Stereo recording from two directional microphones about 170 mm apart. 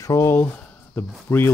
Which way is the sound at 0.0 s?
15° left (ahead or behind).